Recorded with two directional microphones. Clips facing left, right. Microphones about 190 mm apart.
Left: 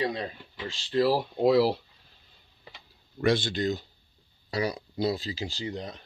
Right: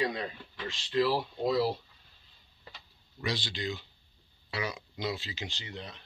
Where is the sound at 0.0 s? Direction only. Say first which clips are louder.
Left 2 dB; 30° left (ahead or behind).